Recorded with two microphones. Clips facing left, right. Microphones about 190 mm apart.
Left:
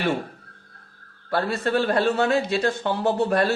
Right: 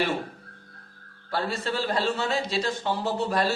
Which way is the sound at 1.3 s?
60° left (ahead or behind).